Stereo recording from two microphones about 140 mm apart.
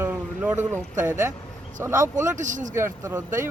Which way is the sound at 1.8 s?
20° right (ahead or behind).